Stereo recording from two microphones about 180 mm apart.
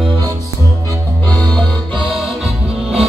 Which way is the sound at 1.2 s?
5° left (ahead or behind).